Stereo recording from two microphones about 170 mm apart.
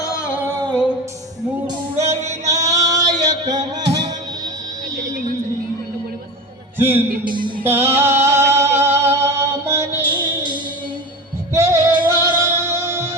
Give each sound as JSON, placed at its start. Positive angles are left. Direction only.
{"t": 0.0, "sound": "a sound", "side_deg": 15}
{"t": 0.7, "sound": "music", "side_deg": 0}
{"t": 2.0, "sound": "female singing", "side_deg": -40}
{"t": 2.5, "sound": "a sound", "side_deg": -20}
{"t": 6.7, "sound": "a man's voice", "side_deg": -15}
{"t": 7.6, "sound": "female singing", "side_deg": -15}
{"t": 9.6, "sound": "music", "side_deg": -15}
{"t": 10.1, "sound": "music", "side_deg": -25}